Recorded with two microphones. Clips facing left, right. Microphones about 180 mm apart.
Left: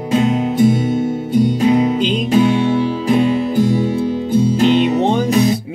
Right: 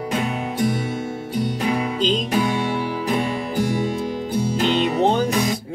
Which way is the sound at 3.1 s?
20° left (ahead or behind).